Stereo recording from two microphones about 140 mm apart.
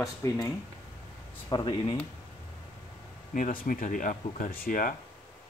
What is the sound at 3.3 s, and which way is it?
Speech, 75° left (ahead or behind).